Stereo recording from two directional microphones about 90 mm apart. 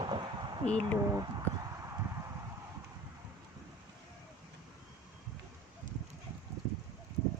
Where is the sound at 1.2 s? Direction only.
40° right (ahead or behind).